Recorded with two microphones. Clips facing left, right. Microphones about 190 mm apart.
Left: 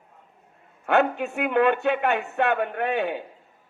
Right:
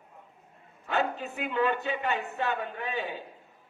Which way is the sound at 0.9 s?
65° left (ahead or behind).